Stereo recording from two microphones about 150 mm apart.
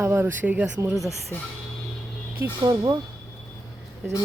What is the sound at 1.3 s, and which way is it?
Speech, 15° left (ahead or behind).